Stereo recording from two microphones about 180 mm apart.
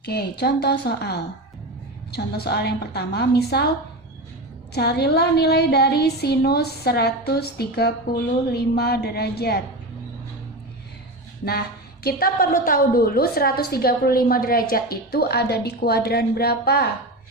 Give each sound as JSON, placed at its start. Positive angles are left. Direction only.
{"t": 0.0, "sound": "a woman's voice", "side_deg": 60}
{"t": 4.7, "sound": "a woman's voice", "side_deg": 65}
{"t": 12.0, "sound": "a woman's voice", "side_deg": 55}